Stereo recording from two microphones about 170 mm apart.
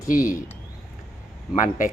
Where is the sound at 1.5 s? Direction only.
50° left (ahead or behind).